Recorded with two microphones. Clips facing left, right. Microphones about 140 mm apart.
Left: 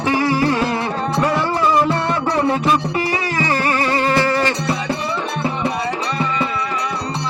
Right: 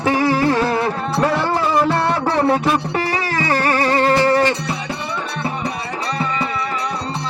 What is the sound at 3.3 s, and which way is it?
Music, 45° right (ahead or behind).